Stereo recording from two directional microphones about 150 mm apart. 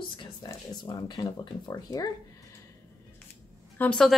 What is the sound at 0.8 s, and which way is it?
Speech, 30° left (ahead or behind).